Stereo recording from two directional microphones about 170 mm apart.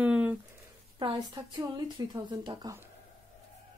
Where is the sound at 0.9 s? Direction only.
25° right (ahead or behind).